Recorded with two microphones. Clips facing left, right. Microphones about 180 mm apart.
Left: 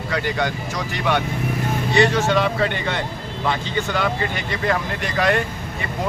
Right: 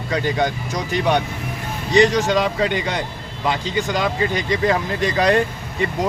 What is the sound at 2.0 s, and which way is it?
Speech, 15° right (ahead or behind).